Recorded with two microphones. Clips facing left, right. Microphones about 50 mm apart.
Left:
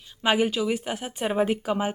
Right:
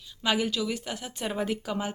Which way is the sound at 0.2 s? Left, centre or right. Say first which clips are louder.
Left 5 dB; left.